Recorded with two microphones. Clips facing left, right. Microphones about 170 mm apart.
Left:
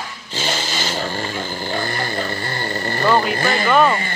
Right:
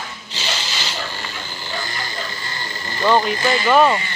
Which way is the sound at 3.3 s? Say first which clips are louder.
Even; 55° left (ahead or behind).